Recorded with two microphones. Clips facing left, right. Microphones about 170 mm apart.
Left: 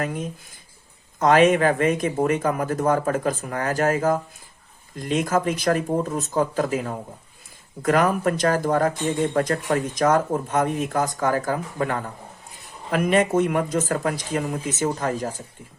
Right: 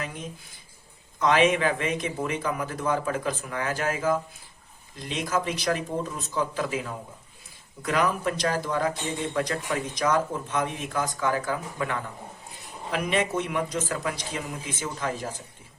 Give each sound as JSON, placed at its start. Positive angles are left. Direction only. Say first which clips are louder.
{"t": 0.0, "sound": "speech", "louder": "left 8 dB", "side_deg": 50}